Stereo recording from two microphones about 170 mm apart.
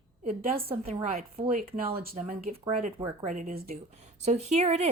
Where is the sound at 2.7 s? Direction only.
45° right (ahead or behind).